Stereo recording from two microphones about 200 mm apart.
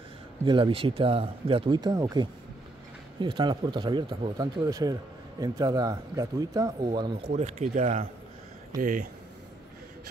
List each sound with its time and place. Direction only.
0.5 s speech: 25° right (ahead or behind)
7.3 s speech: 35° right (ahead or behind)